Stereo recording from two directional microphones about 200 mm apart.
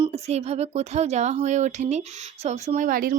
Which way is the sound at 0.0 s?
35° right (ahead or behind).